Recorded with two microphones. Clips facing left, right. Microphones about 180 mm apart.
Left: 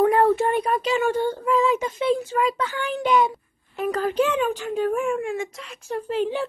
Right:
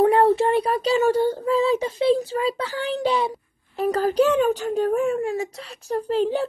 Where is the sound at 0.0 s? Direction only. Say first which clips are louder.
Right 1 dB; 30° right (ahead or behind).